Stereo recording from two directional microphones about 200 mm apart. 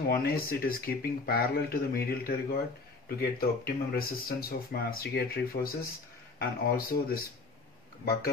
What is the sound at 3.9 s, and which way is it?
Speech, 50° left (ahead or behind).